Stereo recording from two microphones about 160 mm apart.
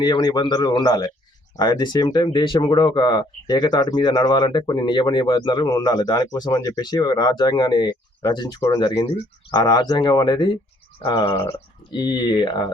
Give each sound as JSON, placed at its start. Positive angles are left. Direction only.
{"t": 0.0, "sound": "speech", "side_deg": 25}